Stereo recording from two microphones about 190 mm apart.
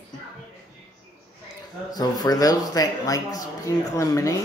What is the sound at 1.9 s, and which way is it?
Speech, 20° left (ahead or behind).